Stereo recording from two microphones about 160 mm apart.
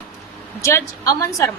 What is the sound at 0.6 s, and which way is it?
Speech, 20° left (ahead or behind).